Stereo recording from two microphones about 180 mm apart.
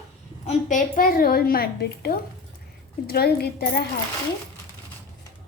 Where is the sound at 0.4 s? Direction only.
45° left (ahead or behind); by 3.8 s 60° left (ahead or behind).